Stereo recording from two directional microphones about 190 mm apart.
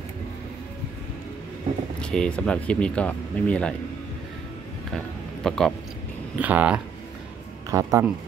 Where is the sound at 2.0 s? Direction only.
5° left (ahead or behind).